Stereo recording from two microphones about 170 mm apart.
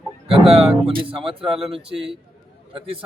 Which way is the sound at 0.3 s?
35° right (ahead or behind).